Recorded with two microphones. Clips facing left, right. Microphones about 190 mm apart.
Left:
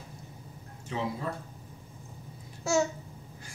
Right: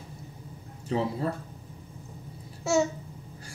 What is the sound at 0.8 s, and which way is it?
Speech, 35° right (ahead or behind).